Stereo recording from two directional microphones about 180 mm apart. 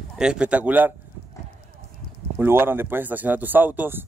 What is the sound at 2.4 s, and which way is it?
Speech, 10° right (ahead or behind).